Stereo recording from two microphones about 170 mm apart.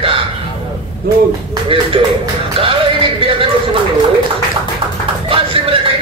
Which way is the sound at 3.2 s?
35° right (ahead or behind).